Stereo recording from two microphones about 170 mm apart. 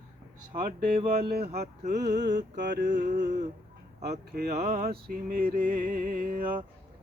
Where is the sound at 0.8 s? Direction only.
60° right (ahead or behind).